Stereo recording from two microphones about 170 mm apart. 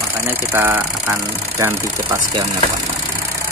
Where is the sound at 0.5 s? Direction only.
10° right (ahead or behind).